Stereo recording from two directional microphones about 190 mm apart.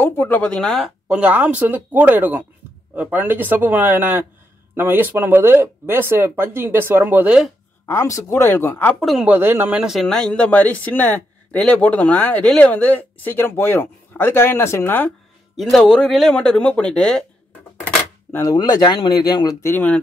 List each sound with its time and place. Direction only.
0.0 s speech: 10° left (ahead or behind)
7.8 s speech: 15° left (ahead or behind)
9.0 s speech: 5° right (ahead or behind)